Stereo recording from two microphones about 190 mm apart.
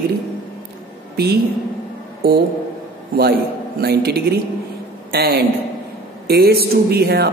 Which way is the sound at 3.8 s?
55° right (ahead or behind).